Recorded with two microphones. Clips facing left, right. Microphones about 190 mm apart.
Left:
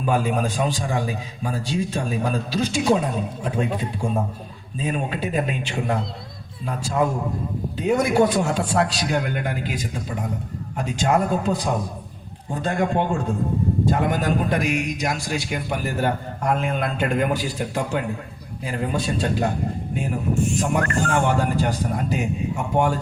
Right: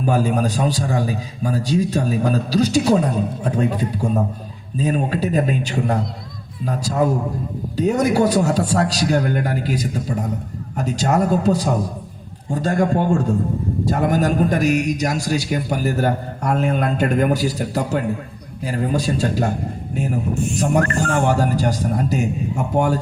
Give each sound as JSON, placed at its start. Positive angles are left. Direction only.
{"t": 0.0, "sound": "a man's voice", "side_deg": -40}
{"t": 20.6, "sound": "a man's voice", "side_deg": -40}